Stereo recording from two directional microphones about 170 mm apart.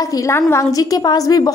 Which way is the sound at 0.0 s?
20° left (ahead or behind).